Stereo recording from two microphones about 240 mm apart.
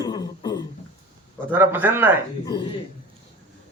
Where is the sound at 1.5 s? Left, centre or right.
Centre.